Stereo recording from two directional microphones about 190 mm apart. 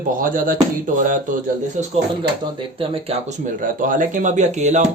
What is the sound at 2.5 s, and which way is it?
Speech, 30° right (ahead or behind).